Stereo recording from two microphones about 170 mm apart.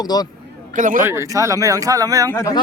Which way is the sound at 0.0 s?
25° left (ahead or behind).